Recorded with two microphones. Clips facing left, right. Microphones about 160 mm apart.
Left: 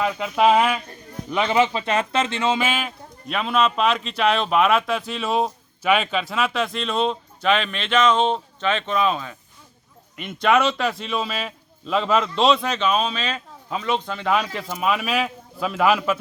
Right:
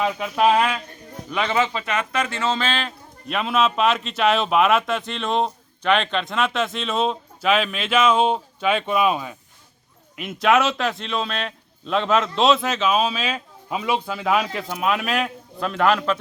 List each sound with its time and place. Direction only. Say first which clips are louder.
0.2 s a man's voice: left 2 dB; centre (ahead or behind)
1.3 s speech: left 3 dB; 25° left (ahead or behind)
1.8 s a man's voice: left 2 dB; 30° left (ahead or behind); by 16.1 s 5° left (ahead or behind)